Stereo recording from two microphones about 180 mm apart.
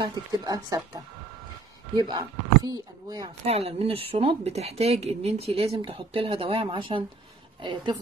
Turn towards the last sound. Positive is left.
turn(degrees=-25)  # may be behind; listen again after turning